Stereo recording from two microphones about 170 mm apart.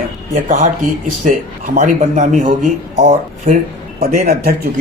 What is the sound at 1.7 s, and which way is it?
A man's voice, 45° right (ahead or behind).